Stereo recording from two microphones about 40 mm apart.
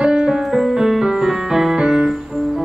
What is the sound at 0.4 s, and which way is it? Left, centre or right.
Music, centre.